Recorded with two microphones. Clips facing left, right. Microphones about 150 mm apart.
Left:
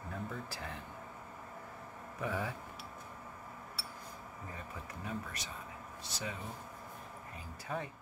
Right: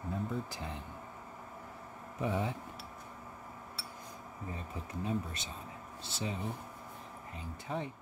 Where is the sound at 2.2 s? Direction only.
25° right (ahead or behind).